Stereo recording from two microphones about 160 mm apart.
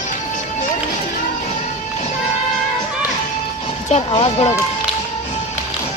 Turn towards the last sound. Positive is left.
turn(degrees=40)  # may be behind; listen again after turning